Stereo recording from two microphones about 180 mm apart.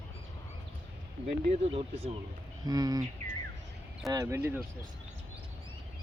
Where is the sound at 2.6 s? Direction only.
20° right (ahead or behind).